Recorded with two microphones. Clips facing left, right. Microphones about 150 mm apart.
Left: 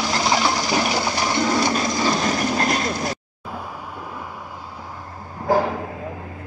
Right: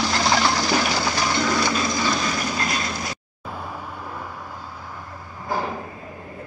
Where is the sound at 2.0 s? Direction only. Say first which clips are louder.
Left 4 dB; 40° left (ahead or behind).